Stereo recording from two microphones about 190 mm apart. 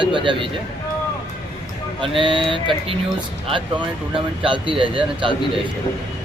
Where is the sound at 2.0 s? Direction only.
25° right (ahead or behind).